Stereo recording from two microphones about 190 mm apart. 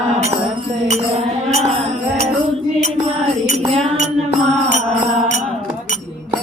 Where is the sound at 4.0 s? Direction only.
35° right (ahead or behind).